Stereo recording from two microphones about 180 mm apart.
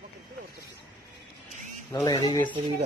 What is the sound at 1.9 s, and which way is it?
Speech, 20° left (ahead or behind).